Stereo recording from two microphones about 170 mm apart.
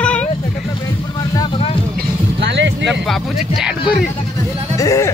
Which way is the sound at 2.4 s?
90° right.